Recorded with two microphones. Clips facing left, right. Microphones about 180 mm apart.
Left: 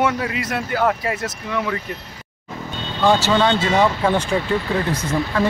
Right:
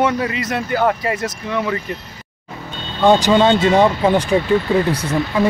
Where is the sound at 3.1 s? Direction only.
15° right (ahead or behind).